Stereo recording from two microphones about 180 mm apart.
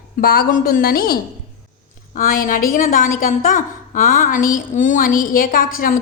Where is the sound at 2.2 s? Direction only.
50° left (ahead or behind).